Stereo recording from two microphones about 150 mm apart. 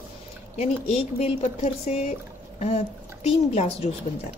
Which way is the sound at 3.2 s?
45° left (ahead or behind).